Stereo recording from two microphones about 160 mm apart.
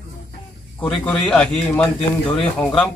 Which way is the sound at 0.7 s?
5° left (ahead or behind).